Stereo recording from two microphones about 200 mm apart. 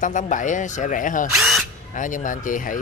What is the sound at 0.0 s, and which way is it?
Speech, 40° left (ahead or behind).